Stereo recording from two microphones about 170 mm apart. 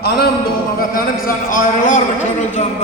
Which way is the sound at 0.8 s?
55° left (ahead or behind).